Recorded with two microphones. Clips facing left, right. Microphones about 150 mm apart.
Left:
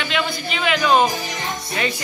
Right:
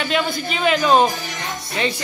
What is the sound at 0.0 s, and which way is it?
Speech, 40° right (ahead or behind).